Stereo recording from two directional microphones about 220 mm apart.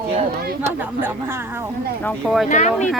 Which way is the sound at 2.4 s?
35° left (ahead or behind).